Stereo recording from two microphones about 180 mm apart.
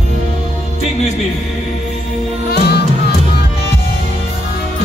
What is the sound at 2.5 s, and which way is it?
Music, 65° left (ahead or behind).